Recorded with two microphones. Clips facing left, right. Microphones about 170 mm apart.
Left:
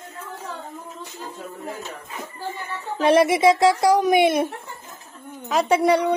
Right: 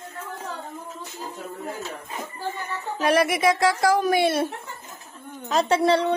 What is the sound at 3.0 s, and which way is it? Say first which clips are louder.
A woman's voice: left 4 dB; 25° left (ahead or behind).